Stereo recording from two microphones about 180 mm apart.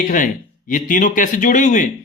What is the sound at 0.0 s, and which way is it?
Speech, 45° left (ahead or behind).